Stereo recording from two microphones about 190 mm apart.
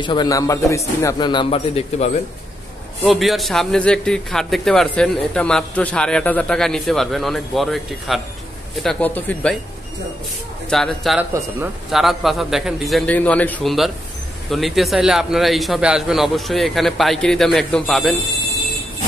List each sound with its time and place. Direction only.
0.0 s a man's voice: 25° left (ahead or behind)
3.1 s a man's voice: centre (ahead or behind)
10.7 s a man's voice: centre (ahead or behind)
11.1 s a man's voice: 10° right (ahead or behind)